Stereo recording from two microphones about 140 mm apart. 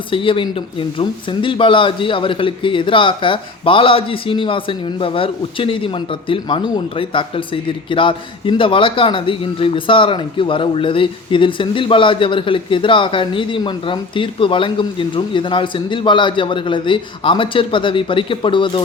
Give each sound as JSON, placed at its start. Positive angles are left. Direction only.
{"t": 0.1, "sound": "speech", "side_deg": 40}